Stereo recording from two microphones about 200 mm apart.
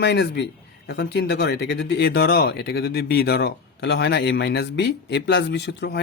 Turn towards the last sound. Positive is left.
turn(degrees=60)  # may be behind; listen again after turning